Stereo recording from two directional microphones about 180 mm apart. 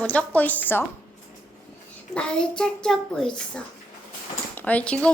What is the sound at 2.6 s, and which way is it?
A woman's voice, 5° left (ahead or behind).